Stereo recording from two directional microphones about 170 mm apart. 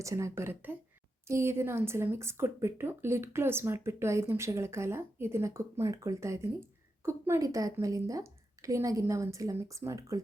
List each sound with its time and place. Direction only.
0.0 s speech: 20° right (ahead or behind)